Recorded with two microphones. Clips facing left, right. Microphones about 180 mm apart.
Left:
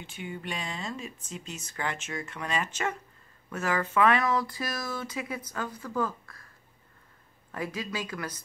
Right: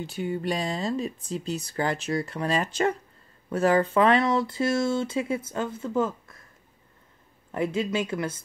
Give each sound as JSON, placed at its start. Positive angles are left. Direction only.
{"t": 0.0, "sound": "speech", "side_deg": -35}
{"t": 7.5, "sound": "speech", "side_deg": -25}